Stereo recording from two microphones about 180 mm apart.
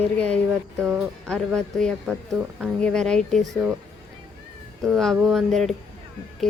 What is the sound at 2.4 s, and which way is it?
Speech, 10° right (ahead or behind).